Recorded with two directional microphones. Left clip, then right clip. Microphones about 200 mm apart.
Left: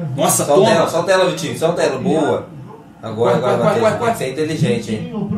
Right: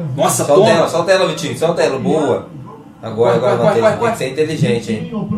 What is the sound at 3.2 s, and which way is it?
A man's voice, 20° right (ahead or behind).